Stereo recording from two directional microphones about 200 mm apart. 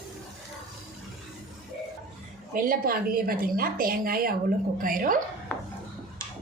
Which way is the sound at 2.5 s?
45° right (ahead or behind).